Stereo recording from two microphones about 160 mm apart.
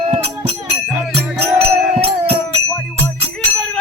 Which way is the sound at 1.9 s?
40° right (ahead or behind).